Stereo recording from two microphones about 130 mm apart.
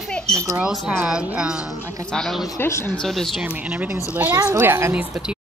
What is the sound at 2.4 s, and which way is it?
Speech, 20° left (ahead or behind).